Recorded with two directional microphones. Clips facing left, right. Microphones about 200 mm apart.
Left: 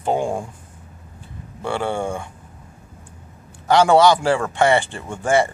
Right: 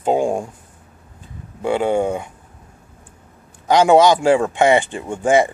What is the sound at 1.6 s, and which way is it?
Speech, 15° right (ahead or behind).